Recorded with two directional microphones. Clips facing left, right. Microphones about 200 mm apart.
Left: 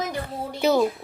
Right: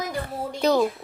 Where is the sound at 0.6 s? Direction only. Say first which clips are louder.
Even; 5° left (ahead or behind).